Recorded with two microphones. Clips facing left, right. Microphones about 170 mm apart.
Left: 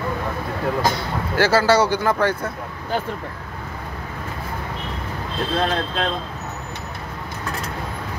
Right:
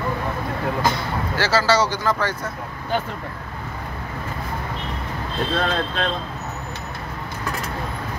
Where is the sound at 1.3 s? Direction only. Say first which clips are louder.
Left 3 dB; 55° left (ahead or behind).